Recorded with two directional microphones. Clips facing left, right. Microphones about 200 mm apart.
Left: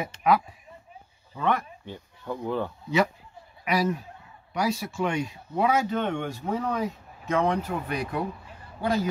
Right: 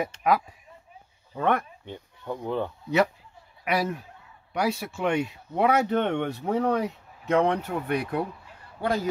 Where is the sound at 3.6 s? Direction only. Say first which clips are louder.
Left 1 dB; 55° right (ahead or behind).